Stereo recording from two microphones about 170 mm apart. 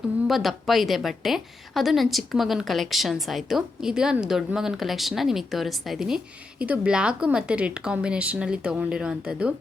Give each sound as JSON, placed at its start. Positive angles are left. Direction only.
{"t": 0.3, "sound": "a woman's voice", "side_deg": 0}